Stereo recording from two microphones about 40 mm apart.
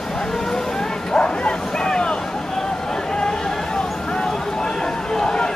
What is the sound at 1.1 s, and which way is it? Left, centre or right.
Vehicle, left.